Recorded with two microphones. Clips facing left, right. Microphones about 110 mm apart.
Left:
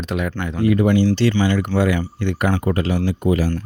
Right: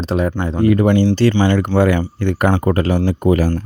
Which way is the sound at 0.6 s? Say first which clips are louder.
Right 3 dB; 45° right (ahead or behind).